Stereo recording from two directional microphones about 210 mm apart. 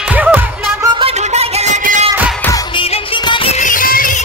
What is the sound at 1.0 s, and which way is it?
Music, 30° right (ahead or behind).